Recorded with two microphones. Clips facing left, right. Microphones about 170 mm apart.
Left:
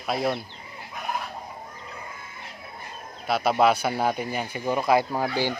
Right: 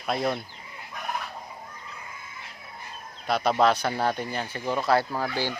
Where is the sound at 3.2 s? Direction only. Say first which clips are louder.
Left 1 dB; 5° left (ahead or behind).